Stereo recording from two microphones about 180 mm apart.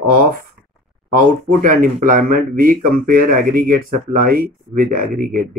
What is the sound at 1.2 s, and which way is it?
Speech, 45° right (ahead or behind).